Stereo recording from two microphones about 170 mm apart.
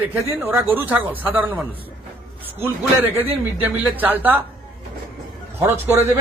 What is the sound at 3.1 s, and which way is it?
Speech, 10° right (ahead or behind).